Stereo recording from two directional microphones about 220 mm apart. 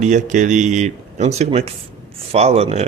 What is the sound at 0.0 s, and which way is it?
Speech, 35° right (ahead or behind).